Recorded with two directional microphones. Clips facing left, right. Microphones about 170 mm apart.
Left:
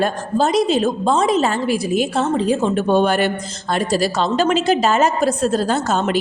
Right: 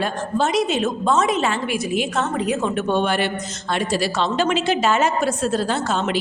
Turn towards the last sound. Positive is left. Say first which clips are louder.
# left 3 dB
turn(degrees=45)  # may be behind; listen again after turning